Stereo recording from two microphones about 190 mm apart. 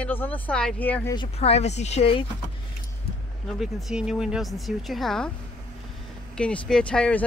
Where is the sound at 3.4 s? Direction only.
Centre (ahead or behind).